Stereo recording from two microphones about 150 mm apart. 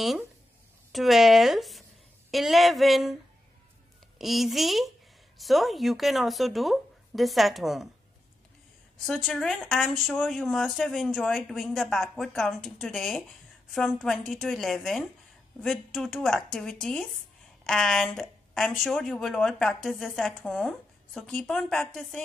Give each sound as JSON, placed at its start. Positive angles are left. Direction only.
{"t": 0.9, "sound": "a woman's voice", "side_deg": 0}
{"t": 4.2, "sound": "a woman's voice", "side_deg": 0}
{"t": 9.0, "sound": "a woman's voice", "side_deg": 0}